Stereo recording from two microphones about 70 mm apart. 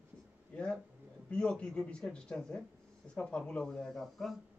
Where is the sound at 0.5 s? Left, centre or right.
Centre.